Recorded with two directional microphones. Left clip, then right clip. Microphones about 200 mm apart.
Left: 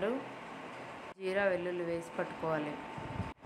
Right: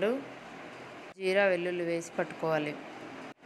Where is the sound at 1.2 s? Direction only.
20° right (ahead or behind).